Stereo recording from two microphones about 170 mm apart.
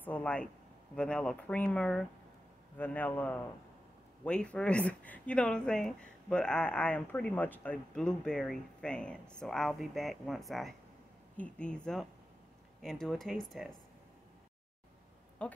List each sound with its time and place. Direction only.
0.0 s a man's voice: 10° left (ahead or behind)
15.4 s speech: 10° left (ahead or behind)